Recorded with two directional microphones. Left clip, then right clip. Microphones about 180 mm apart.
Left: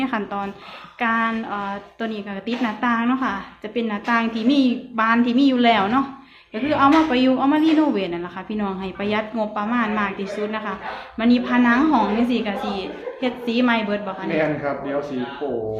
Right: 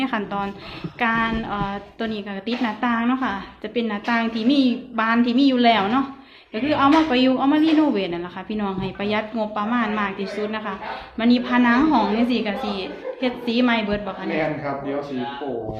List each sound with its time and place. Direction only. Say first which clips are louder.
0.0 s a woman's voice: even; centre (ahead or behind)
14.3 s a man's voice: left 3 dB; 35° left (ahead or behind)